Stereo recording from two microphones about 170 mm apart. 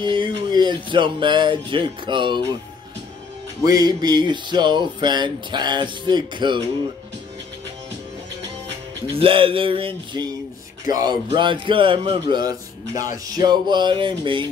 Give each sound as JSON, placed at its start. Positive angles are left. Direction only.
{"t": 0.0, "sound": "speech", "side_deg": -25}
{"t": 3.6, "sound": "speech", "side_deg": -20}
{"t": 9.0, "sound": "speech", "side_deg": -30}
{"t": 10.9, "sound": "speech", "side_deg": -20}